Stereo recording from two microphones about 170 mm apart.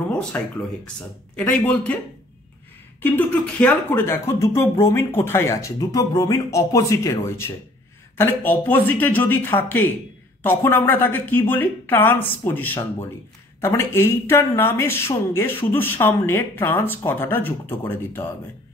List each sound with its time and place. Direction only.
0.1 s speech: 5° left (ahead or behind)
3.0 s speech: 10° left (ahead or behind)